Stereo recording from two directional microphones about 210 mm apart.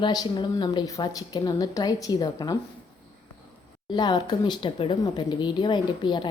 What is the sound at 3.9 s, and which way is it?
Speech, 20° left (ahead or behind).